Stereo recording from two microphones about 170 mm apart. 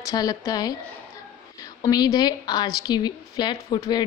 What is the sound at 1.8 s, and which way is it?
A woman's voice, 20° left (ahead or behind).